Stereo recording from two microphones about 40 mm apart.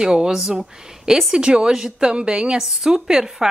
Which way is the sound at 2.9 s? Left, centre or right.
Centre.